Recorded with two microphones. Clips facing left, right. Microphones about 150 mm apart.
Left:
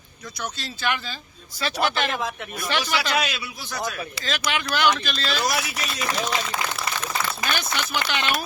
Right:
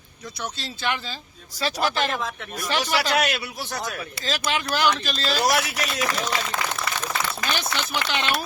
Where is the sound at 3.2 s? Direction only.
65° right (ahead or behind).